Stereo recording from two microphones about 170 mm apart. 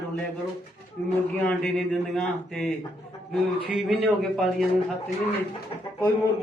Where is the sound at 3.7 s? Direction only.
Centre (ahead or behind).